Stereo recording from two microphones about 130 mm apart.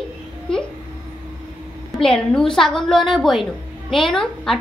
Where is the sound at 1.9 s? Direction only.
5° left (ahead or behind).